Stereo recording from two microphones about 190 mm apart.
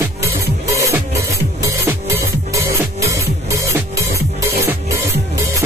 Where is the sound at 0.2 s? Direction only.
15° right (ahead or behind).